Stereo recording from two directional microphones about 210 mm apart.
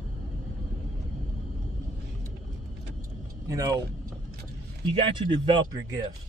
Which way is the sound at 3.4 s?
15° right (ahead or behind).